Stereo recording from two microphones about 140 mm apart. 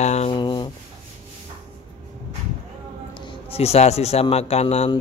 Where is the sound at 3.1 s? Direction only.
40° left (ahead or behind).